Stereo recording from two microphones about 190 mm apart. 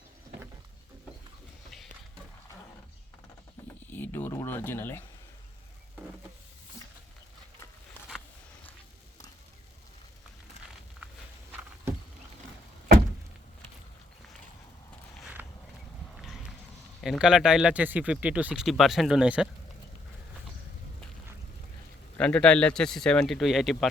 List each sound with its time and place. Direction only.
3.8 s speech: 10° left (ahead or behind)
15.2 s a sound: 10° right (ahead or behind)
17.0 s speech: 5° right (ahead or behind)
22.2 s speech: 5° left (ahead or behind)